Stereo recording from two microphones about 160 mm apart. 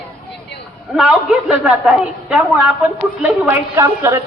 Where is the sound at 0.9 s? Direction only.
5° right (ahead or behind).